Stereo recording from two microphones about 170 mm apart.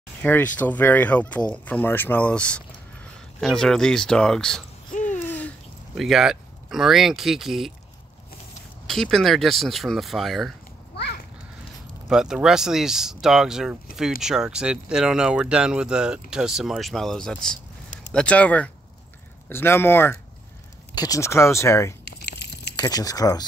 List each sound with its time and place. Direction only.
0.2 s speech: 10° left (ahead or behind)
5.2 s a sound: 10° left (ahead or behind)
5.9 s speech: centre (ahead or behind)
8.8 s speech: centre (ahead or behind)
12.1 s speech: 5° right (ahead or behind); by 21.9 s 15° left (ahead or behind)
22.2 s a sound: 80° left
22.8 s speech: 20° left (ahead or behind)